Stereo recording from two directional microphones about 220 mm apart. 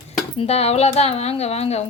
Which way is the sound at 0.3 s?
30° left (ahead or behind).